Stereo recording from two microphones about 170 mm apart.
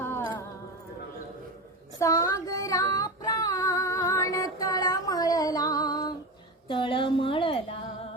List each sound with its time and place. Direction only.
0.0 s music: 15° left (ahead or behind)
2.0 s female singing: 20° left (ahead or behind)
6.7 s a sound: 30° left (ahead or behind)